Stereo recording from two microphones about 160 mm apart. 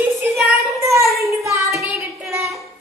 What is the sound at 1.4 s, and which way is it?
Child singing, 20° right (ahead or behind).